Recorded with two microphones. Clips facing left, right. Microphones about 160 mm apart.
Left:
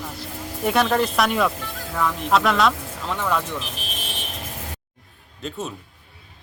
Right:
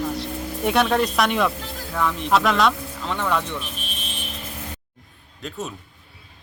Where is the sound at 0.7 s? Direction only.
Centre (ahead or behind).